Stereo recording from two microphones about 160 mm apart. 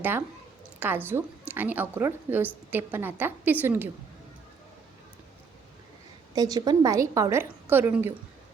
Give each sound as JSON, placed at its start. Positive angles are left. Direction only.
{"t": 0.0, "sound": "a woman's voice", "side_deg": -15}
{"t": 6.3, "sound": "a woman's voice", "side_deg": -25}